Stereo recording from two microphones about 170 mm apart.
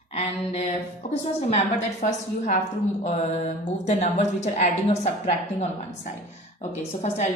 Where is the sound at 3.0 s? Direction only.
40° left (ahead or behind).